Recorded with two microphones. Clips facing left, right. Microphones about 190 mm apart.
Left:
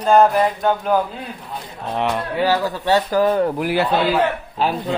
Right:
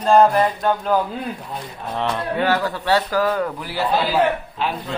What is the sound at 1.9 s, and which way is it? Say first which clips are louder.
Speech: left 1 dB; 20° left (ahead or behind).